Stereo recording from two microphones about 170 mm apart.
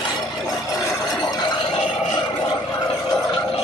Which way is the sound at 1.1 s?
20° left (ahead or behind).